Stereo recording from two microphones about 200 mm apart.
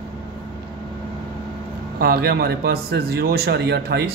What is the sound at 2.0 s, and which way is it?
A man's voice, 50° right (ahead or behind).